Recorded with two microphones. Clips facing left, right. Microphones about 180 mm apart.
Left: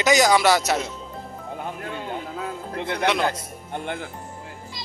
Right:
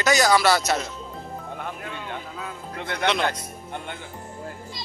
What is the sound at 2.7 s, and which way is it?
Speech, 30° left (ahead or behind).